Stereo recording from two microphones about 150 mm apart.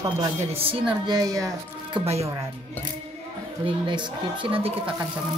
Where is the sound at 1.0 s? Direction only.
25° right (ahead or behind).